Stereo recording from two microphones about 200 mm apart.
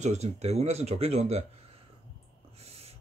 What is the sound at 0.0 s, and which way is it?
Speech, 35° right (ahead or behind).